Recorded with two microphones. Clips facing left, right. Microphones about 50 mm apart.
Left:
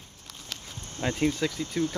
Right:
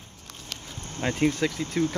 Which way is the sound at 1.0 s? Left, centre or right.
Centre.